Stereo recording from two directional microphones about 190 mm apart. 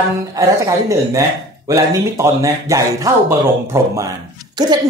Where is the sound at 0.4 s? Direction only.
15° right (ahead or behind).